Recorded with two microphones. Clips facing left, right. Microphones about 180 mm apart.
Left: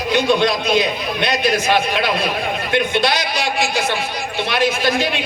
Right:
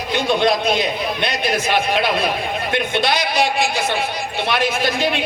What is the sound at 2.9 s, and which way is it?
A man's voice, 55° right (ahead or behind).